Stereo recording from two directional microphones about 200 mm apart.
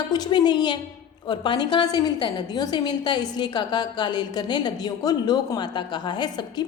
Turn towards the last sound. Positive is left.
turn(degrees=20)  # may be behind; listen again after turning